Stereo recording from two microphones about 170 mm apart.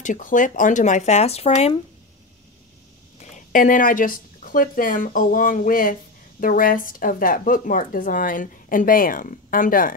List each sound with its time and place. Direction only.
0.0 s speech: 50° left (ahead or behind)
3.2 s speech: 50° left (ahead or behind)